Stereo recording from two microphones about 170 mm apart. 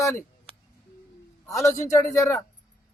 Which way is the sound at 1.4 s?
20° left (ahead or behind).